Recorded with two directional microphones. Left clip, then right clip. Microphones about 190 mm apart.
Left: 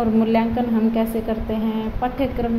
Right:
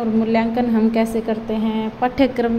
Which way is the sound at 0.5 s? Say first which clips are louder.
Right 3 dB; 15° right (ahead or behind).